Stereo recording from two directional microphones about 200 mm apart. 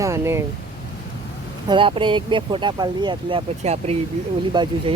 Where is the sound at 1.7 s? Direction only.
25° right (ahead or behind).